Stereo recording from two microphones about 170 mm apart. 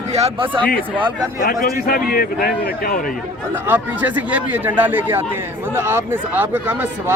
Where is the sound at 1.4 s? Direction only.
60° left (ahead or behind).